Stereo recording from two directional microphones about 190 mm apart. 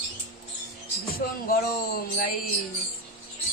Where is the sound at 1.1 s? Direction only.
50° left (ahead or behind).